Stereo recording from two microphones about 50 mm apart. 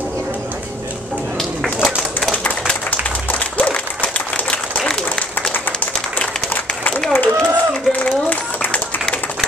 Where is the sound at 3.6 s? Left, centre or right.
Left.